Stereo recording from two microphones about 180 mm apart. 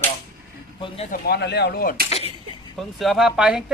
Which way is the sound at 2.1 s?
35° left (ahead or behind).